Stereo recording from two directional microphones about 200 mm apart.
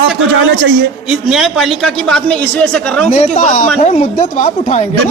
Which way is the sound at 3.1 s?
40° left (ahead or behind).